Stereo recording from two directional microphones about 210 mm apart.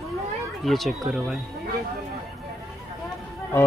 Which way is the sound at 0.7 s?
Centre (ahead or behind).